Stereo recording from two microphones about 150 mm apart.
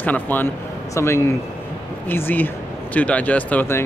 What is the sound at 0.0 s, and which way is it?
Speech, 10° left (ahead or behind).